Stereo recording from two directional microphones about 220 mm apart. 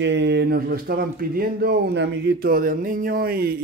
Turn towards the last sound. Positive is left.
turn(degrees=-45)  # may be behind; listen again after turning